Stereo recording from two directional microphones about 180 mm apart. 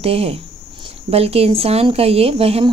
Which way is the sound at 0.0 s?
35° right (ahead or behind).